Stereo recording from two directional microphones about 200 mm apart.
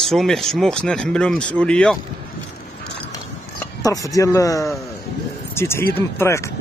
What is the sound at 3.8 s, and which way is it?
Speech, 15° left (ahead or behind).